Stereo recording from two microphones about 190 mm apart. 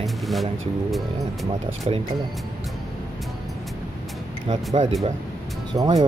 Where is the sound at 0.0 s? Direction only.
Centre (ahead or behind).